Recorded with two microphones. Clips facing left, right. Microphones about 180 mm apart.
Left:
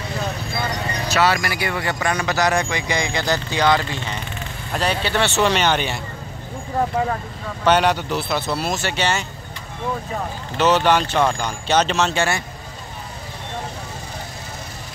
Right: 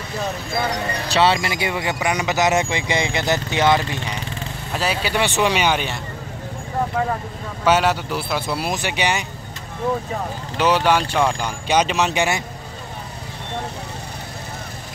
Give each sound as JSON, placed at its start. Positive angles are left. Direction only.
{"t": 1.1, "sound": "speech", "side_deg": -25}
{"t": 4.7, "sound": "speech", "side_deg": -5}
{"t": 7.6, "sound": "speech", "side_deg": -5}
{"t": 10.6, "sound": "speech", "side_deg": -10}